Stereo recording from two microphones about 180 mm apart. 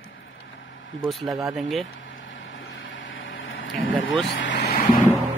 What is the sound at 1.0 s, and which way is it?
Speech, centre (ahead or behind).